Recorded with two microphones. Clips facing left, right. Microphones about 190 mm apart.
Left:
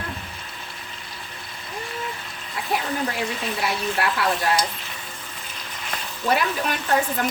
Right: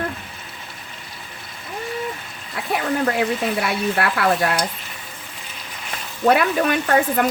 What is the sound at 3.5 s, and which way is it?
Speech, 60° right (ahead or behind).